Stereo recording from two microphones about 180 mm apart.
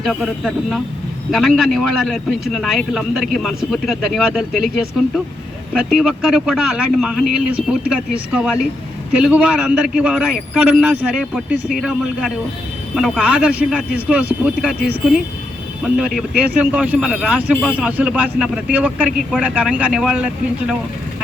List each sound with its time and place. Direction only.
0.0 s a man's voice: centre (ahead or behind)
5.9 s a man's voice: centre (ahead or behind)